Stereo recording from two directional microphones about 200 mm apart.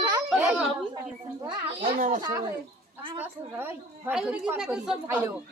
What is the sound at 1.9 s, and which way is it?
Speech, 45° right (ahead or behind).